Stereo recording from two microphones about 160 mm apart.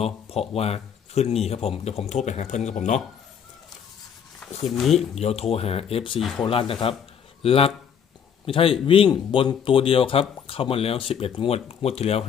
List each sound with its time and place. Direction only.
0.0 s speech: 40° left (ahead or behind)
4.7 s speech: centre (ahead or behind)
4.9 s speech: 40° left (ahead or behind)